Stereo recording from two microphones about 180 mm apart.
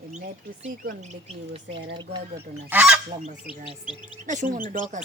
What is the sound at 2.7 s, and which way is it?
Speech, 10° right (ahead or behind).